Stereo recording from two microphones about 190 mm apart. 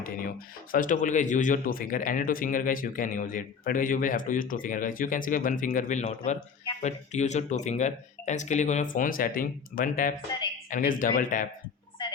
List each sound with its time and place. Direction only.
0.7 s speech: 45° left (ahead or behind)